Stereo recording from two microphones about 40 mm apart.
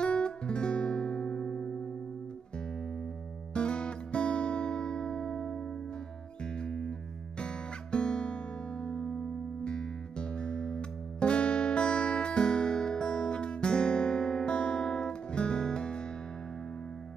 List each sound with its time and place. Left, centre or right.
0.0 s music: left
3.5 s music: left
6.6 s music: left